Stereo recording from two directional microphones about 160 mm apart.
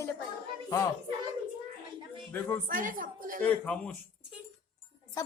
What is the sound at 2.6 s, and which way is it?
Speech, 60° right (ahead or behind).